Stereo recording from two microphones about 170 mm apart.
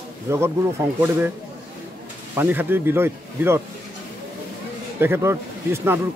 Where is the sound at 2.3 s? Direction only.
10° right (ahead or behind).